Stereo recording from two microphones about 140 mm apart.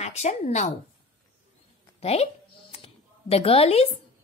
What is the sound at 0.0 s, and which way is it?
Speech, 55° left (ahead or behind).